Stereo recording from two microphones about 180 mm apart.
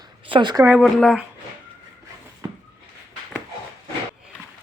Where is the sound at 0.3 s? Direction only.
25° right (ahead or behind).